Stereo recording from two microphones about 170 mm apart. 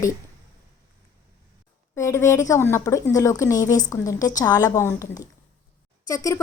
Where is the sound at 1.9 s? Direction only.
15° left (ahead or behind).